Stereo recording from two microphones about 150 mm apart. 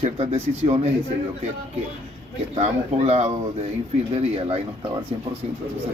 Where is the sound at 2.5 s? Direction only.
45° right (ahead or behind).